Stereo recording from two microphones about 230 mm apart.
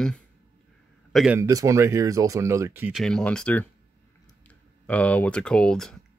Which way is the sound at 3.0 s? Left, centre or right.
Centre.